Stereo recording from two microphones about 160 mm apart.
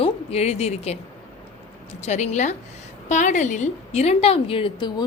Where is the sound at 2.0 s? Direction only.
45° left (ahead or behind).